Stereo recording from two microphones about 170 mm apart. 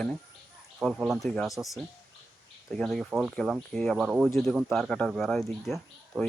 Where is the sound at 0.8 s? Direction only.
Centre (ahead or behind).